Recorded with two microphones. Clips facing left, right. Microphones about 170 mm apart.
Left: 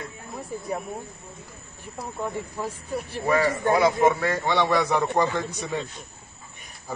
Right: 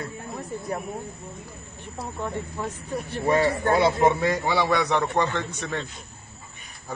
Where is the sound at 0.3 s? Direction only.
Centre (ahead or behind).